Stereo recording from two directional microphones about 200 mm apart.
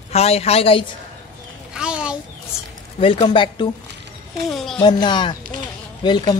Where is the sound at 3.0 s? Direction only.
25° left (ahead or behind).